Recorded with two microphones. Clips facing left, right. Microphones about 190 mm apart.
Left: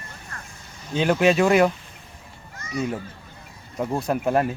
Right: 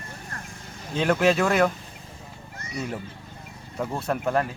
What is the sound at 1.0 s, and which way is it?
Speech, centre (ahead or behind).